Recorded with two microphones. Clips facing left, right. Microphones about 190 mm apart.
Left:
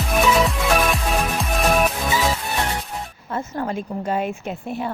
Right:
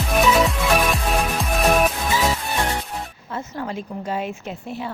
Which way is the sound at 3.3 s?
50° left (ahead or behind).